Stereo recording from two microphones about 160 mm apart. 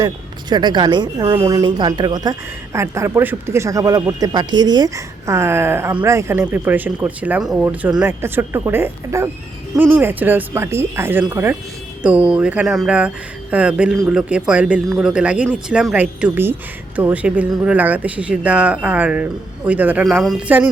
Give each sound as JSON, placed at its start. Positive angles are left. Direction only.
{"t": 0.5, "sound": "speech", "side_deg": -25}